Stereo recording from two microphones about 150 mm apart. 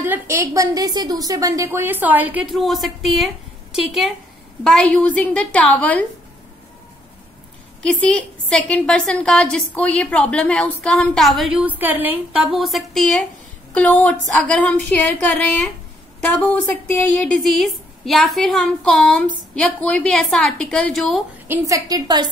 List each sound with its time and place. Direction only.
0.1 s a woman's voice: 20° right (ahead or behind)
2.5 s a woman's voice: centre (ahead or behind)
7.8 s a woman's voice: 5° left (ahead or behind)
11.8 s a woman's voice: 10° right (ahead or behind)
12.4 s a woman's voice: centre (ahead or behind)
17.2 s a woman's voice: 5° left (ahead or behind)
21.5 s a woman's voice: 20° right (ahead or behind)